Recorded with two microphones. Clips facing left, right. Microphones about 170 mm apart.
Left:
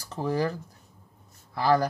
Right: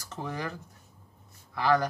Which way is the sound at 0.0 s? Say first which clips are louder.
Left 8 dB; 35° left (ahead or behind).